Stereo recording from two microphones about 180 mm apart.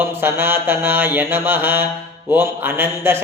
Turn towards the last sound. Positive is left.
turn(degrees=-10)  # may be behind; listen again after turning